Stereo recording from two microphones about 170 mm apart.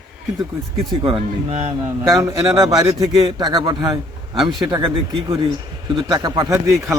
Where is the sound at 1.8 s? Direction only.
20° right (ahead or behind).